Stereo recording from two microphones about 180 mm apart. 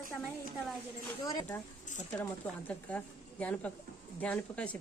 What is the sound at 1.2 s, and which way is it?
Speech, 20° left (ahead or behind).